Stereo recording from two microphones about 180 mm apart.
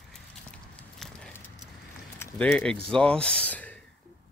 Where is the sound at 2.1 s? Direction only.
10° left (ahead or behind).